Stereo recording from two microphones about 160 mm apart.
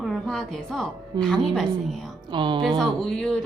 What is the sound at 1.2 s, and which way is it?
Speech, 5° left (ahead or behind).